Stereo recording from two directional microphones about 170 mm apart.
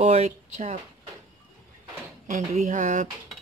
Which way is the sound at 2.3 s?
45° right (ahead or behind).